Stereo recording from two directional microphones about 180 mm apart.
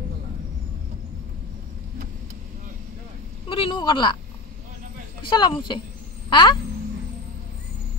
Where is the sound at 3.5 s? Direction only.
25° left (ahead or behind).